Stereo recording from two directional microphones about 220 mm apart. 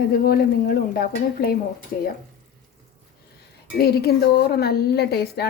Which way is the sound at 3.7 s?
45° left (ahead or behind).